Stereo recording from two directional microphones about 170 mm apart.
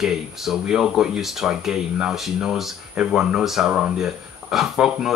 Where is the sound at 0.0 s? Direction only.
5° right (ahead or behind).